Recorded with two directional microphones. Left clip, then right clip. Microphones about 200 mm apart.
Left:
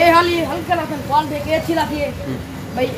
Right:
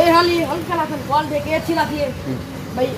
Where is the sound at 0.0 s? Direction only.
5° right (ahead or behind).